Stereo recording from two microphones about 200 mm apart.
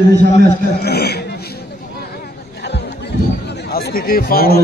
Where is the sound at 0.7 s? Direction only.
50° left (ahead or behind).